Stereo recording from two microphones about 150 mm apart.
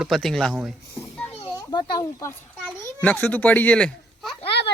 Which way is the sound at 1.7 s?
20° left (ahead or behind).